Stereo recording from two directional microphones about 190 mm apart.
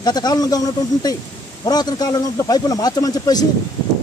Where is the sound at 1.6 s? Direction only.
20° left (ahead or behind).